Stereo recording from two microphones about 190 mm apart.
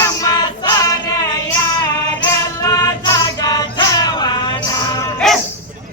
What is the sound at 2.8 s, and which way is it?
Male singing, 20° left (ahead or behind).